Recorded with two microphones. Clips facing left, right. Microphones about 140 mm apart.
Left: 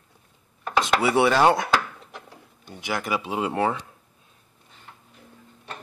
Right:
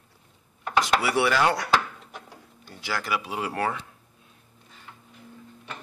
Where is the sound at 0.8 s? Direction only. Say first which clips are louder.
Left 3 dB; 25° left (ahead or behind).